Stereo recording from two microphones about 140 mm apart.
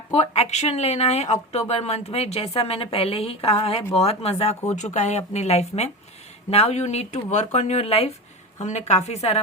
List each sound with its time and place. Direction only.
0.1 s speech: 50° left (ahead or behind)
4.7 s speech: 55° left (ahead or behind)